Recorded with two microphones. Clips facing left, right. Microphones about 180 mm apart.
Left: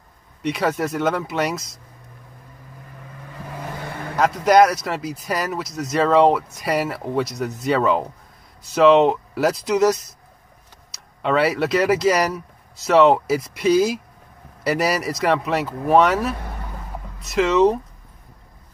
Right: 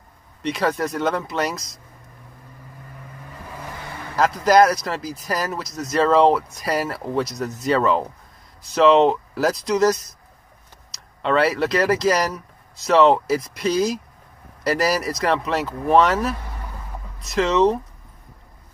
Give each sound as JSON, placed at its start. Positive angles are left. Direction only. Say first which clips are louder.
{"t": 0.4, "sound": "speech", "louder": "left 1 dB", "side_deg": 0}
{"t": 4.2, "sound": "speech", "louder": "left 1 dB", "side_deg": 0}